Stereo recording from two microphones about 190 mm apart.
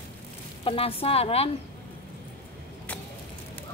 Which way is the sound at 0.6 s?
30° left (ahead or behind).